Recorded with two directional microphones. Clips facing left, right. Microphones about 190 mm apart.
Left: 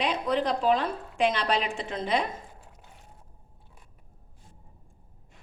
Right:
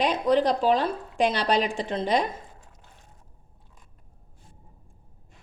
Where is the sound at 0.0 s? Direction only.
40° right (ahead or behind).